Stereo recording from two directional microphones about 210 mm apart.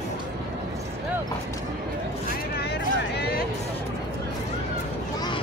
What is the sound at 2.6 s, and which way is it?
Vehicle, 50° left (ahead or behind).